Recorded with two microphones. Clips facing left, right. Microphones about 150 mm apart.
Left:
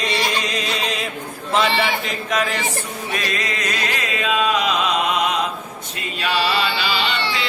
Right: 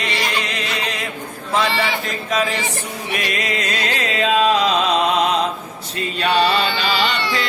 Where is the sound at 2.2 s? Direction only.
Centre (ahead or behind).